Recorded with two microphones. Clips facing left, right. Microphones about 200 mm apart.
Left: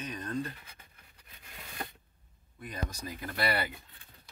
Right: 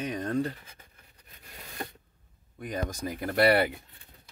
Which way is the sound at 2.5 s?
70° right (ahead or behind).